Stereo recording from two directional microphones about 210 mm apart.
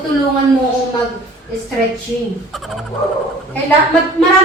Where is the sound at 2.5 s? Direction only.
Centre (ahead or behind).